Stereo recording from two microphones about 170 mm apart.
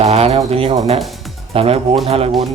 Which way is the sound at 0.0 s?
40° right (ahead or behind).